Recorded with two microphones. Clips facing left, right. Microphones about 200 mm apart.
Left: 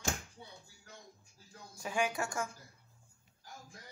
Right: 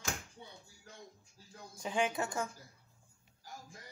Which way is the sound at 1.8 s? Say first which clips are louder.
Right 1 dB; 20° right (ahead or behind).